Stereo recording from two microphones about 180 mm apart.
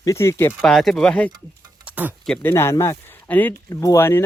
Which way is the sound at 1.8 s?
10° right (ahead or behind).